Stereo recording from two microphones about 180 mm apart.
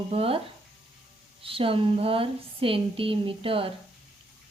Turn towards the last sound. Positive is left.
turn(degrees=-30)  # may be behind; listen again after turning